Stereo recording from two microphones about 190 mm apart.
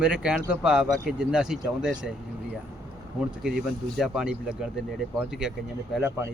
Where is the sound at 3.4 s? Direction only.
Centre (ahead or behind).